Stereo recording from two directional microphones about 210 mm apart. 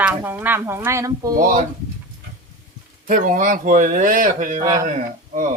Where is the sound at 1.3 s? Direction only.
40° right (ahead or behind).